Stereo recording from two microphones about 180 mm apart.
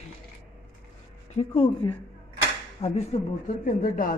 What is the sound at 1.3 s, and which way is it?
Speech, 35° left (ahead or behind).